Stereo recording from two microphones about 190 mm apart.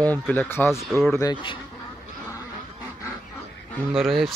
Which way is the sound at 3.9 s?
Centre (ahead or behind).